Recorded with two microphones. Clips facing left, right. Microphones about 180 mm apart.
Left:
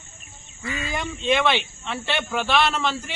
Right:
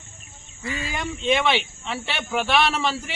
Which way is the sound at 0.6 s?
30° right (ahead or behind).